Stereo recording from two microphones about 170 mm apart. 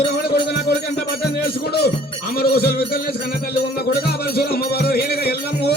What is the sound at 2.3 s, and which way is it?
Music, 65° left (ahead or behind).